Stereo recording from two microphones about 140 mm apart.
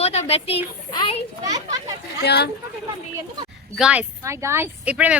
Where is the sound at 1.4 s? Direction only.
25° right (ahead or behind).